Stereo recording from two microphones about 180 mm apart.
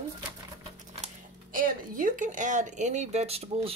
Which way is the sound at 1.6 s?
50° right (ahead or behind).